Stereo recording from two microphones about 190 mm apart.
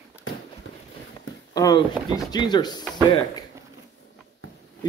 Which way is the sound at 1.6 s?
20° left (ahead or behind).